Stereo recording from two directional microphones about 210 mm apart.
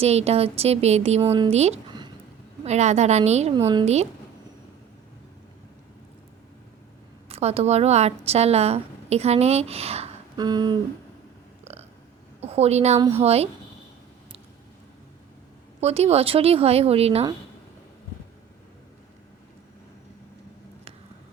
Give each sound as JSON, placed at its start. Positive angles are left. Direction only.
{"t": 0.0, "sound": "a woman's voice", "side_deg": -30}
{"t": 3.6, "sound": "speech", "side_deg": -20}
{"t": 7.3, "sound": "a woman's voice", "side_deg": -30}
{"t": 11.6, "sound": "burping", "side_deg": -30}
{"t": 12.4, "sound": "a woman's voice", "side_deg": -30}
{"t": 15.8, "sound": "speech", "side_deg": -30}